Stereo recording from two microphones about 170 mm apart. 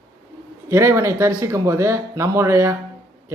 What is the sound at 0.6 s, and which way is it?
A man's voice, 15° right (ahead or behind).